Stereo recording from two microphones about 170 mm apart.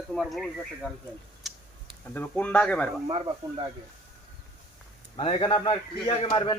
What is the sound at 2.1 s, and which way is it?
Speech, 10° left (ahead or behind).